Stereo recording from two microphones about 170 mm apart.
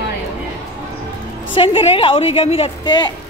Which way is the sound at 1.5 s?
30° left (ahead or behind).